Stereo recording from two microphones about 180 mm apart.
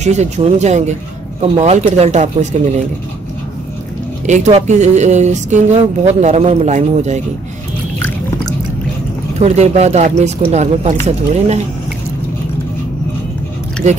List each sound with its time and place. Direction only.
0.0 s speech: 40° right (ahead or behind)
4.3 s speech: 40° right (ahead or behind)
9.4 s speech: 40° right (ahead or behind)